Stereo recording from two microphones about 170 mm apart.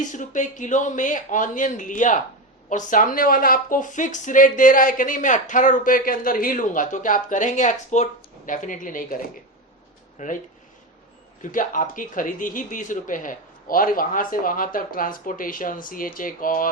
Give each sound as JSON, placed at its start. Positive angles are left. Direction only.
{"t": 0.1, "sound": "speech", "side_deg": 50}
{"t": 11.4, "sound": "speech", "side_deg": 50}